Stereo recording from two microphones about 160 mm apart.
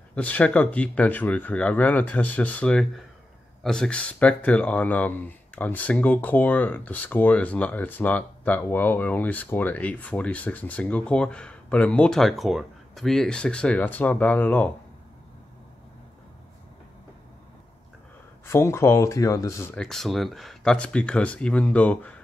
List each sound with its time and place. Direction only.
0.1 s speech: 10° left (ahead or behind)
18.4 s speech: 15° left (ahead or behind)
19.7 s speech: 5° left (ahead or behind)